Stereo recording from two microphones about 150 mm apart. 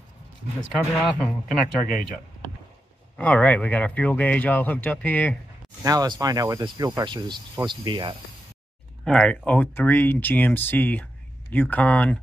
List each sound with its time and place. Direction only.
1.1 s speech: 5° left (ahead or behind)
3.2 s speech: 10° left (ahead or behind)
5.9 s speech: 25° right (ahead or behind)
9.0 s speech: 5° left (ahead or behind)